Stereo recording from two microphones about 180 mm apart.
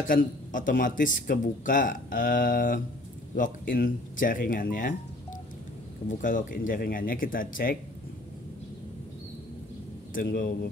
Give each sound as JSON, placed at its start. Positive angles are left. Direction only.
{"t": 0.0, "sound": "speech", "side_deg": 50}
{"t": 6.0, "sound": "speech", "side_deg": 50}
{"t": 10.1, "sound": "speech", "side_deg": 50}